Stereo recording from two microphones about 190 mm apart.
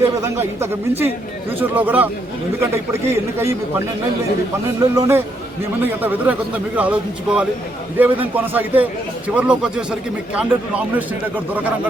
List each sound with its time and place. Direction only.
0.0 s a man's voice: 15° right (ahead or behind)
4.9 s a man's voice: 15° right (ahead or behind)